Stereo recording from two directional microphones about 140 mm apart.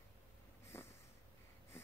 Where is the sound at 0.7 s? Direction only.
15° left (ahead or behind).